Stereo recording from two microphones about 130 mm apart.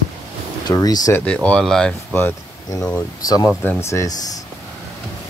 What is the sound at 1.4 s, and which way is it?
Speech, 5° left (ahead or behind).